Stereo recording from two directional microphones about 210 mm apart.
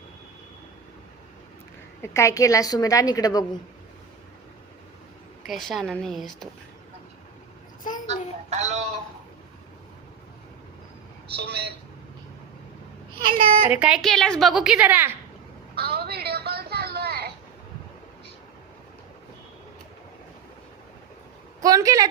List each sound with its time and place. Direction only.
2.0 s a woman's voice: 15° left (ahead or behind)
5.5 s a woman's voice: centre (ahead or behind)
8.0 s a woman's voice: 35° right (ahead or behind)
11.3 s a woman's voice: 50° right (ahead or behind)
13.7 s a woman's voice: 5° right (ahead or behind)
15.7 s a sound: 50° right (ahead or behind)
21.6 s speech: 15° right (ahead or behind)